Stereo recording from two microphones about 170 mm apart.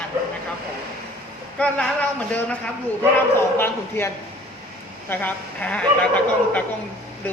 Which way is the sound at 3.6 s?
15° left (ahead or behind).